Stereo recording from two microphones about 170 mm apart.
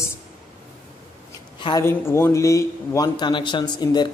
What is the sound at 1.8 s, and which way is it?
A man's voice, 15° left (ahead or behind).